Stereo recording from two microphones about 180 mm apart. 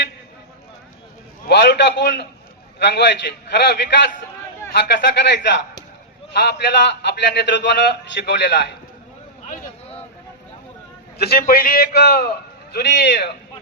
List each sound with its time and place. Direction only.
1.5 s a man's voice: 70° left (ahead or behind)
11.2 s a man's voice: 60° left (ahead or behind)